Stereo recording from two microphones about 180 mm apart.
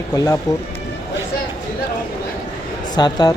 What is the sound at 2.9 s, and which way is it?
Speech, 20° left (ahead or behind).